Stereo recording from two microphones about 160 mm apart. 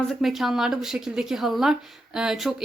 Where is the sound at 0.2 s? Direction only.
Centre (ahead or behind).